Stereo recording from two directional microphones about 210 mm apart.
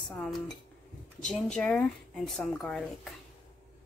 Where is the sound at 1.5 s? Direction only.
Centre (ahead or behind).